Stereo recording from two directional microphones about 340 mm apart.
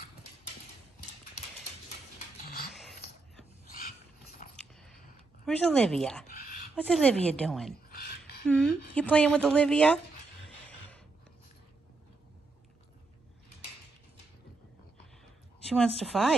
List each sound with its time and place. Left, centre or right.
2.1 s a sound: left
4.4 s biting: left
5.4 s a woman's voice: centre
7.9 s a sound: left
8.5 s a woman's voice: centre
15.7 s a woman's voice: centre